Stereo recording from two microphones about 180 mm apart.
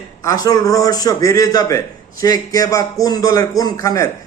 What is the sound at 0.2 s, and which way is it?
A man's voice, 20° left (ahead or behind).